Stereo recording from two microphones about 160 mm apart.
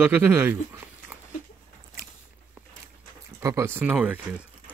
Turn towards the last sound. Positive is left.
turn(degrees=-10)  # may be behind; listen again after turning